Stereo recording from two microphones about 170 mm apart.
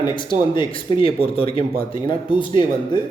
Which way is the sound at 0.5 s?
30° left (ahead or behind).